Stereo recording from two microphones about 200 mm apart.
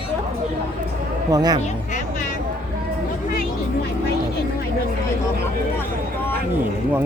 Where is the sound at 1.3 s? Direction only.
20° right (ahead or behind).